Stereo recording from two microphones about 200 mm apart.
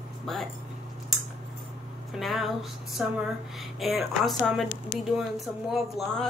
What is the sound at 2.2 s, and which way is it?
Speech, centre (ahead or behind).